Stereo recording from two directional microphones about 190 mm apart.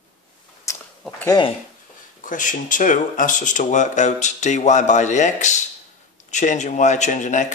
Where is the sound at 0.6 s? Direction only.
15° left (ahead or behind).